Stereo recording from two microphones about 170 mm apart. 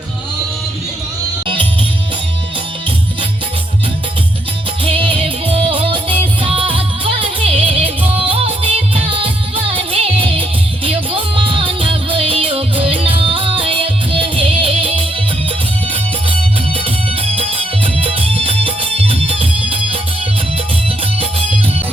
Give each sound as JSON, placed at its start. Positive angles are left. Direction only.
{"t": 4.9, "sound": "music", "side_deg": -30}
{"t": 17.9, "sound": "music", "side_deg": -35}